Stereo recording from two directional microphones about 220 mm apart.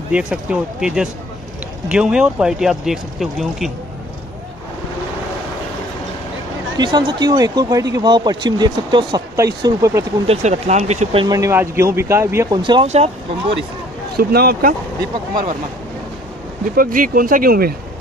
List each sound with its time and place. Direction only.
0.1 s speech: 5° right (ahead or behind)
6.8 s speech: 20° right (ahead or behind)
10.2 s speech: 30° right (ahead or behind)
11.2 s speech: 15° right (ahead or behind)
14.1 s speech: 45° right (ahead or behind)
16.7 s speech: 40° right (ahead or behind)